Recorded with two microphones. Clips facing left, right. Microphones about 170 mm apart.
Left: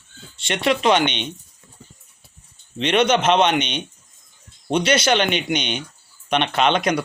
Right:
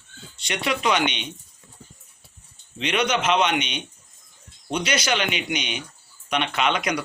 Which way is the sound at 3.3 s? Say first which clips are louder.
Left 4 dB; 30° left (ahead or behind).